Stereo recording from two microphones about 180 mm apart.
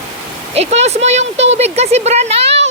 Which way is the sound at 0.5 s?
35° right (ahead or behind).